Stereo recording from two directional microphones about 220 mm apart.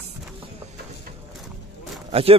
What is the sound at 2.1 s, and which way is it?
Speech, 25° right (ahead or behind).